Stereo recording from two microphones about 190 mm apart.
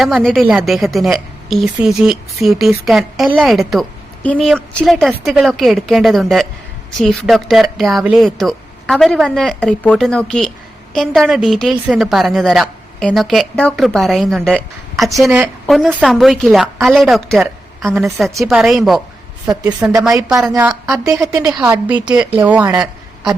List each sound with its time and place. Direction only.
0.0 s a woman's voice: centre (ahead or behind)